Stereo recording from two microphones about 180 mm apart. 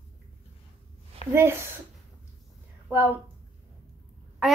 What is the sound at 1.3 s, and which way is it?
Speech, 15° right (ahead or behind).